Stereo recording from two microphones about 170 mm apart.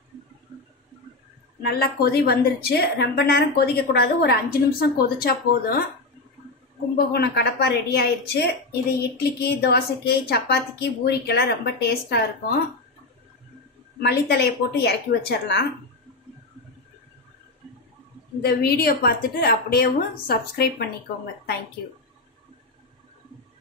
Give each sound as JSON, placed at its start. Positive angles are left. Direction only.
{"t": 1.6, "sound": "a woman's voice", "side_deg": 65}
{"t": 7.1, "sound": "a woman's voice", "side_deg": 70}
{"t": 13.9, "sound": "a woman's voice", "side_deg": 70}
{"t": 18.4, "sound": "a woman's voice", "side_deg": 65}